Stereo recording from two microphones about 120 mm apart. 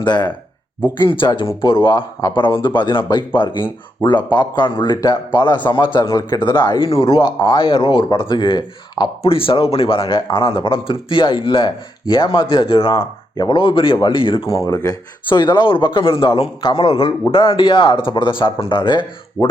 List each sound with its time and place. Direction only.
0.0 s a man's voice: 35° left (ahead or behind)
9.2 s speech: 50° left (ahead or behind)
14.5 s speech: 25° left (ahead or behind)
15.3 s speech: 40° left (ahead or behind)